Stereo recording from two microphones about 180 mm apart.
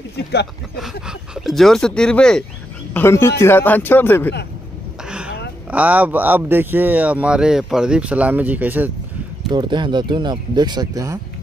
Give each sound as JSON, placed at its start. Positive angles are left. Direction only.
{"t": 1.0, "sound": "a man's voice", "side_deg": -5}
{"t": 5.0, "sound": "a sound", "side_deg": -5}
{"t": 5.7, "sound": "speech", "side_deg": -10}
{"t": 9.5, "sound": "speech", "side_deg": -25}